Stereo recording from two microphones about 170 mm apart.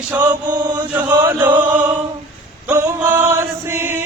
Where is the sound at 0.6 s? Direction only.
25° right (ahead or behind).